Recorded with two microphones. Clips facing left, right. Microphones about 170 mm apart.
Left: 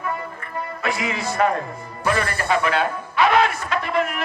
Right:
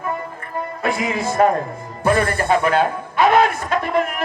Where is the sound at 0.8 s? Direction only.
50° right (ahead or behind).